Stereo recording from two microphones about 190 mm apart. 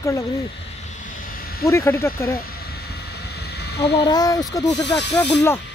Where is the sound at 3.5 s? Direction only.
60° left (ahead or behind).